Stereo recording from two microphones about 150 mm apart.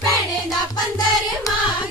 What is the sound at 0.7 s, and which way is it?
Music, 25° left (ahead or behind).